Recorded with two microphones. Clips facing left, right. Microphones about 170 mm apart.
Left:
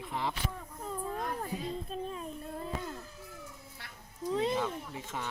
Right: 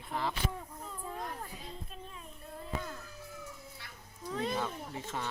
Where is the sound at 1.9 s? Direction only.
40° left (ahead or behind).